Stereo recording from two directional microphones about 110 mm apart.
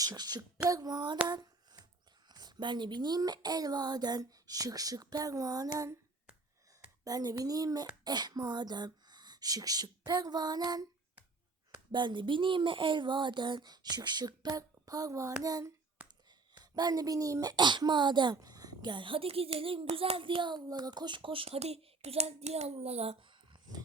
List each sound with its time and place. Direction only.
0.0 s speech: 35° right (ahead or behind)
1.3 s a sound: 40° right (ahead or behind)
2.3 s speech: 40° right (ahead or behind)
7.0 s speech: 35° right (ahead or behind)
11.9 s speech: 45° right (ahead or behind); by 23.1 s 70° right (ahead or behind)